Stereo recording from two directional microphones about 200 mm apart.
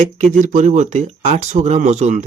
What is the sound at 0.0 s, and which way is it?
Speech, 40° right (ahead or behind).